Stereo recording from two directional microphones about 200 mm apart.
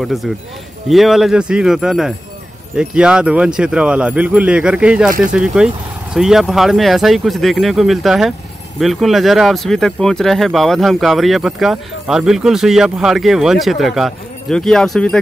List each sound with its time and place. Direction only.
0.0 s speech: centre (ahead or behind)